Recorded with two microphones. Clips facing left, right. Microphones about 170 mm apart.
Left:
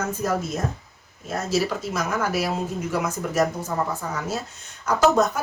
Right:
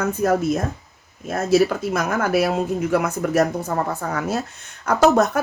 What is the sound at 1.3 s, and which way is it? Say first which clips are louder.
Speech: right 7 dB; 60° right (ahead or behind).